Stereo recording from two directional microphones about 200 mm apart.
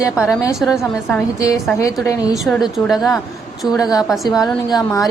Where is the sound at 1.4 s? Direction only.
15° left (ahead or behind).